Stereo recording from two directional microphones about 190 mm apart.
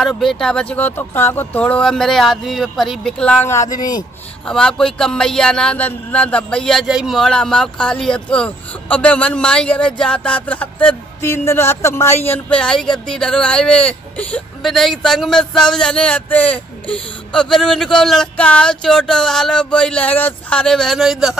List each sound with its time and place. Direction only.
0.0 s a man's voice: centre (ahead or behind); by 4.0 s 20° left (ahead or behind)
4.5 s a man's voice: 5° left (ahead or behind)